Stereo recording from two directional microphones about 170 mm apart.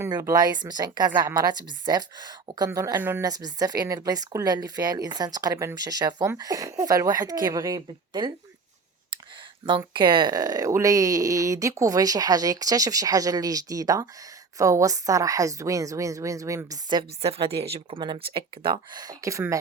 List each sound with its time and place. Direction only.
0.0 s a woman's voice: 15° right (ahead or behind)
9.6 s a woman's voice: 30° right (ahead or behind)